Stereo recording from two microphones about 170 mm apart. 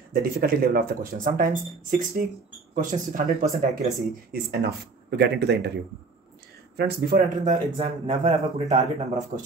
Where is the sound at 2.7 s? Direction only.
50° right (ahead or behind).